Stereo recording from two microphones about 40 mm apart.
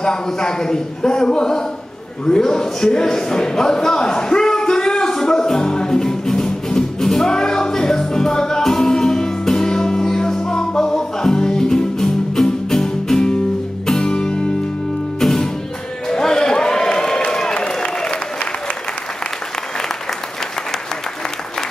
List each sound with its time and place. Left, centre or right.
0.0 s a man's voice: centre
2.2 s a sound: centre
13.8 s music: centre
15.1 s music: centre
16.1 s a sound: centre
17.3 s applause: centre